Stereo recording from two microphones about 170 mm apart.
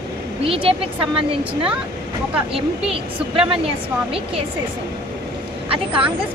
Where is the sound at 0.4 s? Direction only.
35° right (ahead or behind).